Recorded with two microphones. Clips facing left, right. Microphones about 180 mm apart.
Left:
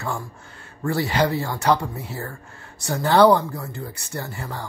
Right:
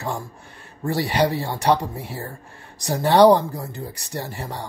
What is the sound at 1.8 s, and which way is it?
Speech, 15° right (ahead or behind).